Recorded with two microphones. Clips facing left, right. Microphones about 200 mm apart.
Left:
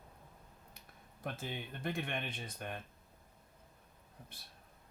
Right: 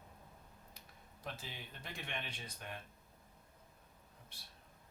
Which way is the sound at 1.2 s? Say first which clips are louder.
Left 6 dB; 55° left (ahead or behind).